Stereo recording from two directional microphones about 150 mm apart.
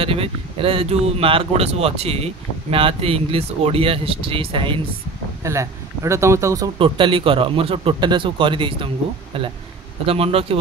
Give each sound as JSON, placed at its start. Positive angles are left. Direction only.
{"t": 0.0, "sound": "speech", "side_deg": -40}
{"t": 5.4, "sound": "speech", "side_deg": -20}
{"t": 6.8, "sound": "speech", "side_deg": -35}